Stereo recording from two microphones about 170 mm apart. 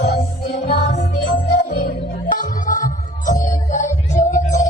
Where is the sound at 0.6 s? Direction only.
40° left (ahead or behind).